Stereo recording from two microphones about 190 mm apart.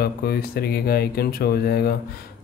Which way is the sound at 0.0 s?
55° left (ahead or behind).